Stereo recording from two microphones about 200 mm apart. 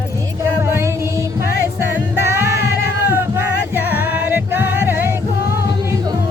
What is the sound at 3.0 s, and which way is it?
Music, 10° right (ahead or behind).